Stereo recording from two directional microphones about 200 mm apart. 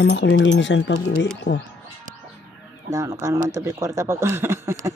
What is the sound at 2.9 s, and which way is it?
Speech, 15° right (ahead or behind).